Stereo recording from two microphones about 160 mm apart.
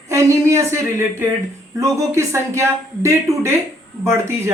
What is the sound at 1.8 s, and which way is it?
Speech, 20° right (ahead or behind).